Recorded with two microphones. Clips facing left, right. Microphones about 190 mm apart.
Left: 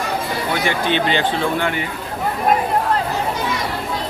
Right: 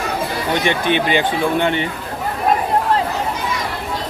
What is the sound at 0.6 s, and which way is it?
Speech, 20° right (ahead or behind).